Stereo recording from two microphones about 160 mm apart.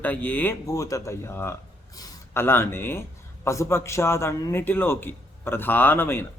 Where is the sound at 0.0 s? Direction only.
10° left (ahead or behind).